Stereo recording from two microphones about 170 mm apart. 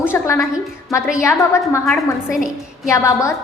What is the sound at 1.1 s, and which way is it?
Speech, 15° left (ahead or behind).